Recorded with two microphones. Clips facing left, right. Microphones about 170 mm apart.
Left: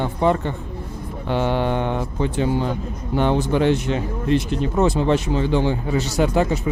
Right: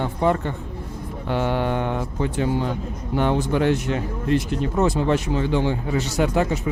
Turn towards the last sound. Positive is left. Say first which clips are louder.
# left 2 dB
turn(degrees=30)  # may be behind; listen again after turning